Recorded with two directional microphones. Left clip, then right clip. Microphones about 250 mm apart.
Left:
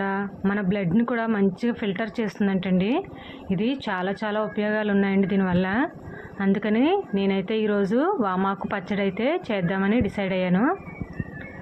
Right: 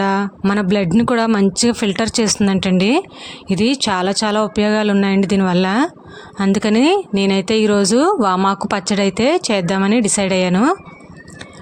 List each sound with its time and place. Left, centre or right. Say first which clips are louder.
0.0 s speech: right 9 dB; right